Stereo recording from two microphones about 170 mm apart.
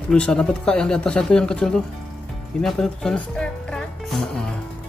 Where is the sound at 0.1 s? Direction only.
5° left (ahead or behind).